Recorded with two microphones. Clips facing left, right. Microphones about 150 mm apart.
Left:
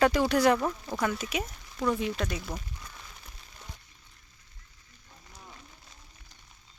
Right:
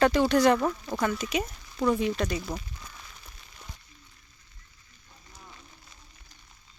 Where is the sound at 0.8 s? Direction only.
5° right (ahead or behind).